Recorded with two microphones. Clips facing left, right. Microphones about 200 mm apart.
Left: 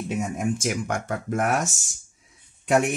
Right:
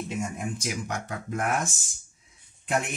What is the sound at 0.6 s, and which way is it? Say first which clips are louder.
Speech: left 5 dB; 50° left (ahead or behind).